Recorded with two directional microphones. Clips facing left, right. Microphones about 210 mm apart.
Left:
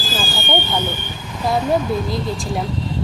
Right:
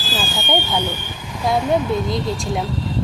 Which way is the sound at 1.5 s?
Centre (ahead or behind).